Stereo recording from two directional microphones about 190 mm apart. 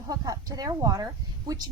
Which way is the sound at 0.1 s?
20° right (ahead or behind).